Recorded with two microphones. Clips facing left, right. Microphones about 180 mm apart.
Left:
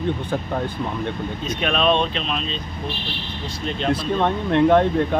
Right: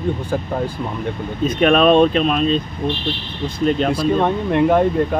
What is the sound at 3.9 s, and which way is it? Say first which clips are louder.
Speech: right 4 dB; 10° right (ahead or behind).